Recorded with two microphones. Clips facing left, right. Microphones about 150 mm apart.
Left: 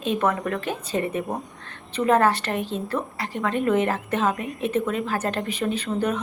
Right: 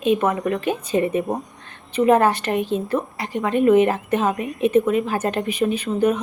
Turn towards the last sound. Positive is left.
turn(degrees=-15)  # may be behind; listen again after turning